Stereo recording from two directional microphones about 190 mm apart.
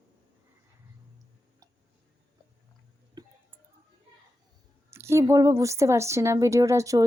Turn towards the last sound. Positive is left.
turn(degrees=-15)  # may be behind; listen again after turning